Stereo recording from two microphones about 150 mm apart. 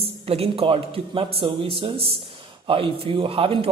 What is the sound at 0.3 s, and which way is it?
A man's voice, 40° right (ahead or behind).